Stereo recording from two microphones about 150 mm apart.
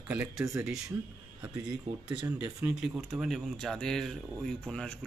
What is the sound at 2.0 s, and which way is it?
Speech, 30° right (ahead or behind).